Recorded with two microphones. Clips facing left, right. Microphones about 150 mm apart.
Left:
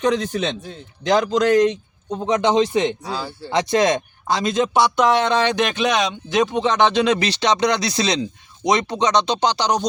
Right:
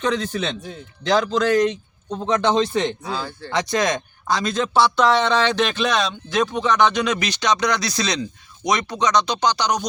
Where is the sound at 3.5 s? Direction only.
25° left (ahead or behind).